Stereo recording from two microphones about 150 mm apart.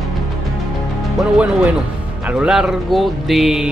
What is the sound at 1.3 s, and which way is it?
Speech, 10° right (ahead or behind).